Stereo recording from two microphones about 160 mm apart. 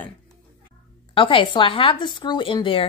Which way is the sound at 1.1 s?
30° left (ahead or behind).